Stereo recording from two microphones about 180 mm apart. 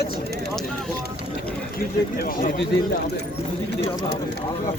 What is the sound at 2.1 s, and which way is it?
Speech, 55° left (ahead or behind).